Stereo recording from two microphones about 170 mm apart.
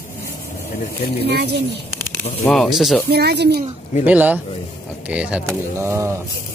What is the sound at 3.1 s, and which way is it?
Speech, 70° right (ahead or behind).